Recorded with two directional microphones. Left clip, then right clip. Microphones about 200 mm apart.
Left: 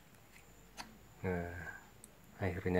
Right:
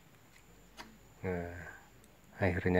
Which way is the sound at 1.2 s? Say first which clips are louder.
Right 1 dB; 5° right (ahead or behind).